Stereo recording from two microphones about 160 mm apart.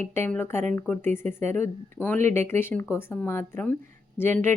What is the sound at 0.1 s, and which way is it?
Speech, 15° left (ahead or behind).